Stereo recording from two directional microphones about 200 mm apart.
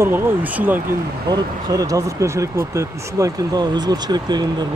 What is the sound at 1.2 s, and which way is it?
Speech, 20° right (ahead or behind).